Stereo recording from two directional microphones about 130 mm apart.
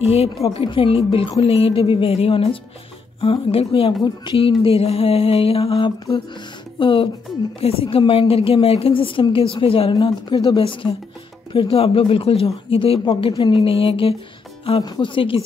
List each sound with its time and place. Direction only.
0.0 s music: 50° left (ahead or behind)
6.8 s speech: 40° left (ahead or behind)
7.6 s music: 45° left (ahead or behind)
14.8 s speech: 35° left (ahead or behind)